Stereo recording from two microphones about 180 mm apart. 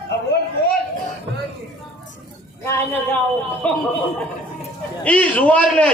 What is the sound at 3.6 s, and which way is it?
Speech, 5° left (ahead or behind).